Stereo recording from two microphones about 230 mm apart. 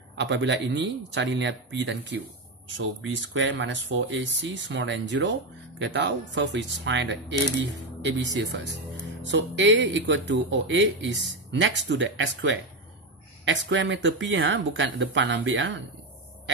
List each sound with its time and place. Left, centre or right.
0.2 s speech: right